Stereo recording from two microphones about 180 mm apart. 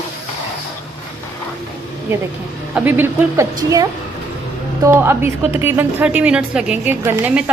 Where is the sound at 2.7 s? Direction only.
10° right (ahead or behind).